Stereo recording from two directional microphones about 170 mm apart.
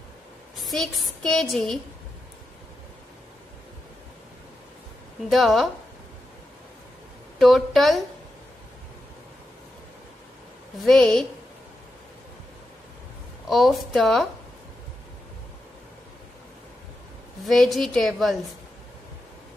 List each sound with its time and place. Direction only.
0.6 s a woman's voice: centre (ahead or behind)
5.3 s a woman's voice: centre (ahead or behind)
7.3 s a woman's voice: centre (ahead or behind)
10.8 s a woman's voice: 5° left (ahead or behind)
13.5 s a woman's voice: centre (ahead or behind)
17.5 s a woman's voice: centre (ahead or behind)